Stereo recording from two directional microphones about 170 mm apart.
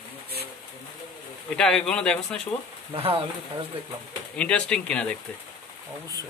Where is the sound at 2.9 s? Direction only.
35° right (ahead or behind).